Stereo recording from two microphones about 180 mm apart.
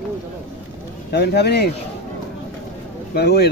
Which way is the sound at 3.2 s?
60° left (ahead or behind).